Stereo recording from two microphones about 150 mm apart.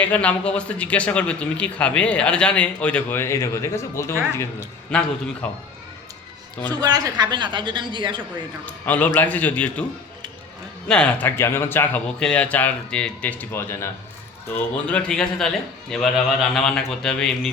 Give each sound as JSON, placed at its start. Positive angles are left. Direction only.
{"t": 0.0, "sound": "a man's voice", "side_deg": 10}
{"t": 6.7, "sound": "speech", "side_deg": -25}
{"t": 8.6, "sound": "a man's voice", "side_deg": 10}
{"t": 10.8, "sound": "a man's voice", "side_deg": 5}